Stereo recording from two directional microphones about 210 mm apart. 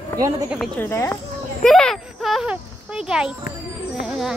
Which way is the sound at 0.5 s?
Centre (ahead or behind).